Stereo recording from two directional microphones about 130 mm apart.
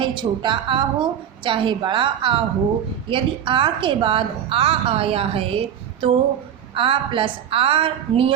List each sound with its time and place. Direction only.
0.0 s a woman's voice: 35° right (ahead or behind)